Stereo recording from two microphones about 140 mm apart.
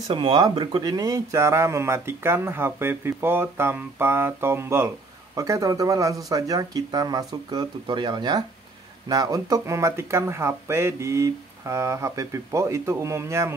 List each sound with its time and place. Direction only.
0.1 s speech: 35° right (ahead or behind); by 13.6 s 20° right (ahead or behind)